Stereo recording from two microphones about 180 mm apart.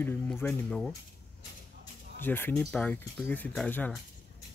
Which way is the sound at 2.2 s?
10° left (ahead or behind).